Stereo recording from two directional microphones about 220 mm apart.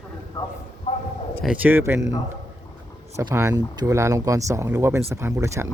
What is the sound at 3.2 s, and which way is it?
Speech, 15° right (ahead or behind).